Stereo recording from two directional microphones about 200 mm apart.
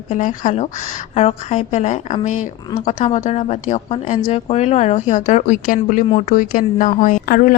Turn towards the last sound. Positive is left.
turn(degrees=50)  # may be behind; listen again after turning